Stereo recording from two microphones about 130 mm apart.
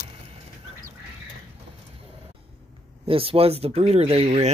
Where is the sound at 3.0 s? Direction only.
45° right (ahead or behind).